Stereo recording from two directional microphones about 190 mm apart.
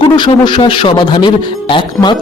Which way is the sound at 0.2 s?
25° left (ahead or behind).